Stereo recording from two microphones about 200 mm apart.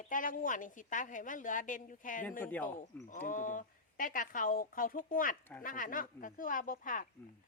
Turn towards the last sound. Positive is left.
turn(degrees=40)  # may be behind; listen again after turning